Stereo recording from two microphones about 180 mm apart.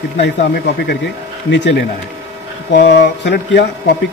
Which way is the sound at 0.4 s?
60° left (ahead or behind).